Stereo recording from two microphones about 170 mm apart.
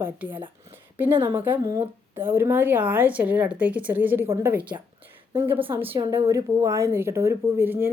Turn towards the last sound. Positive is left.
turn(degrees=-10)  # may be behind; listen again after turning